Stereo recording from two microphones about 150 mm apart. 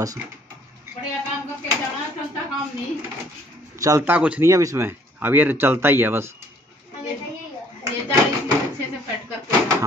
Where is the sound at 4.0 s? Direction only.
10° right (ahead or behind).